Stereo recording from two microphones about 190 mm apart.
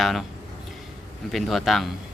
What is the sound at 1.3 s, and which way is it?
Speech, centre (ahead or behind).